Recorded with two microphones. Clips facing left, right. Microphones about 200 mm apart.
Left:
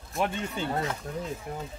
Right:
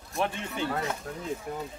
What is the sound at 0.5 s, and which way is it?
Speech, 25° left (ahead or behind).